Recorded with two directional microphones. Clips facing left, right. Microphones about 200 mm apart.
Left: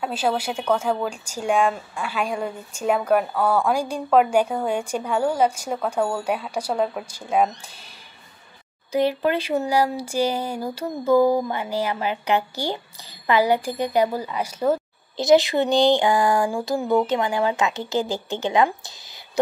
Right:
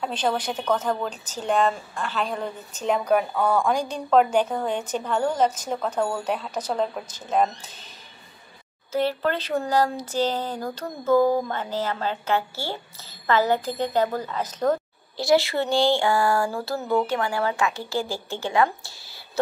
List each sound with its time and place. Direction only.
0.0 s a woman's voice: 5° left (ahead or behind)
8.9 s a woman's voice: 15° left (ahead or behind)
15.1 s a sound: 20° left (ahead or behind)